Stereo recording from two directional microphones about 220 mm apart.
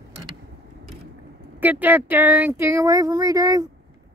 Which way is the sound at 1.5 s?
5° right (ahead or behind).